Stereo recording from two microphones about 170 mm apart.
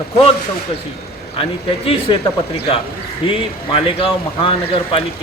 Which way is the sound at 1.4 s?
35° left (ahead or behind).